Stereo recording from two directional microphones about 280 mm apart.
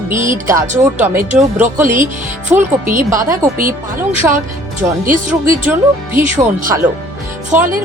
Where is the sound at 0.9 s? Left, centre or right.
Centre.